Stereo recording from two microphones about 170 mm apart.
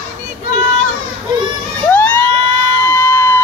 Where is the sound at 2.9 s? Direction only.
15° left (ahead or behind).